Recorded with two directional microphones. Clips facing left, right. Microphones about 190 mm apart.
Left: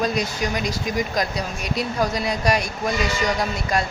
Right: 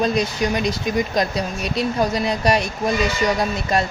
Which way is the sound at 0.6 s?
25° right (ahead or behind).